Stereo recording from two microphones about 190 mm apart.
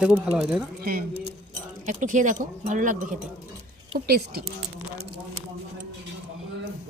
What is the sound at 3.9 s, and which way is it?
Speech, 55° right (ahead or behind).